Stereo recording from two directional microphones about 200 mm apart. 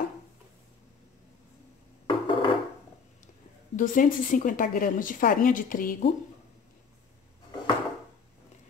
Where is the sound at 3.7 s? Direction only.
40° left (ahead or behind).